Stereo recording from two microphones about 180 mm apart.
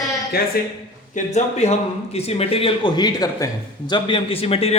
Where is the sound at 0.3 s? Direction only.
55° left (ahead or behind).